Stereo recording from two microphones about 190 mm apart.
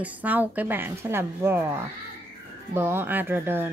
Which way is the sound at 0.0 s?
10° right (ahead or behind).